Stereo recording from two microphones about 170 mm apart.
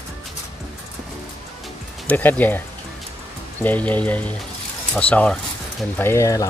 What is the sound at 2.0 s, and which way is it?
Speech, 10° left (ahead or behind).